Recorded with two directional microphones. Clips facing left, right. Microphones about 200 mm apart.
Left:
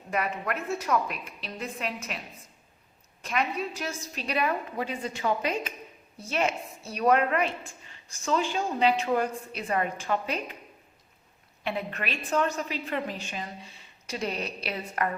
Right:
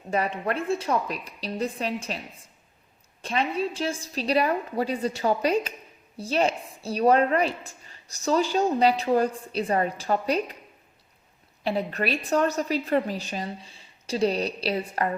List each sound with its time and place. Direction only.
0.1 s a woman's voice: 30° right (ahead or behind)
11.6 s a woman's voice: 35° right (ahead or behind)